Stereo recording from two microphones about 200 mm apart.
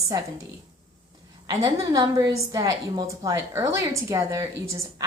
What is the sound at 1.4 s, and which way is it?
A woman's voice, 15° right (ahead or behind).